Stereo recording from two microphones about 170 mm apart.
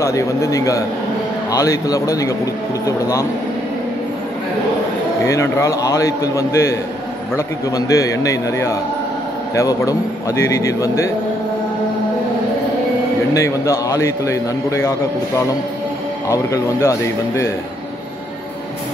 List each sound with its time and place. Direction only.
0.0 s a man's voice: 20° left (ahead or behind)
5.2 s a man's voice: 15° left (ahead or behind)
13.3 s a man's voice: 15° left (ahead or behind)